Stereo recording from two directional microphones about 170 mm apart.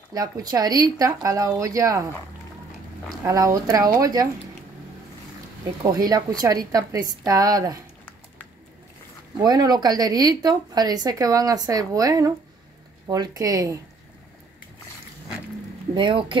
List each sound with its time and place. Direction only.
0.1 s a woman's voice: 20° right (ahead or behind)
3.3 s a woman's voice: 20° right (ahead or behind)
5.8 s a woman's voice: 25° right (ahead or behind)
9.4 s a woman's voice: 25° right (ahead or behind)
15.9 s a woman's voice: 30° right (ahead or behind)